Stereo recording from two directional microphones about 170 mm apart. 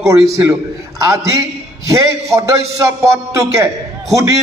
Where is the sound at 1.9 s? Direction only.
15° right (ahead or behind).